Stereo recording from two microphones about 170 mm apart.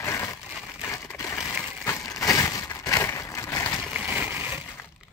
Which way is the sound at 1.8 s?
20° left (ahead or behind).